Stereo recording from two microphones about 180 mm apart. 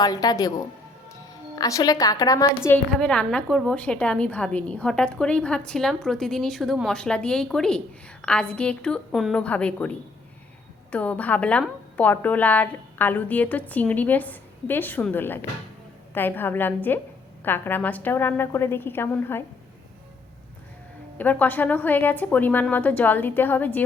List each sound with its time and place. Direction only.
0.0 s a woman's voice: 20° left (ahead or behind)
1.5 s a woman's voice: 20° left (ahead or behind)
2.9 s a woman's voice: 5° left (ahead or behind)
10.9 s a woman's voice: 5° left (ahead or behind)
21.2 s a woman's voice: 10° left (ahead or behind)